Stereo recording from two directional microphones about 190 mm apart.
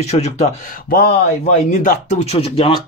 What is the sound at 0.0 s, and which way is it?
Speech, 35° left (ahead or behind).